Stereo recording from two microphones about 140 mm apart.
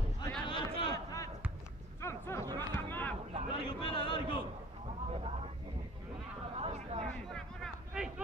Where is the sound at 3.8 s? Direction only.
40° left (ahead or behind).